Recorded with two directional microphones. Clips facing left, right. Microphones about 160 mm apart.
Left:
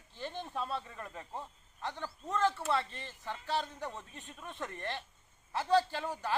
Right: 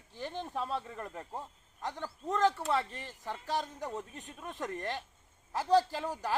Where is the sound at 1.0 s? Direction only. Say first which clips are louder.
Right 3 dB; 35° right (ahead or behind).